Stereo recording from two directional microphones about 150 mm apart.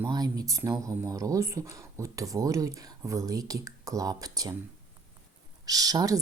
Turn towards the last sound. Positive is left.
turn(degrees=-25)  # may be behind; listen again after turning